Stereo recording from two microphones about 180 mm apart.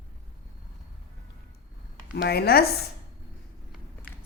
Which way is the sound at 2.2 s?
60° left (ahead or behind).